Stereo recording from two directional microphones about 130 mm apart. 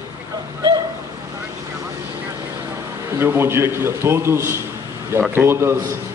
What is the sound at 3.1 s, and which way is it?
A man's voice, 20° right (ahead or behind).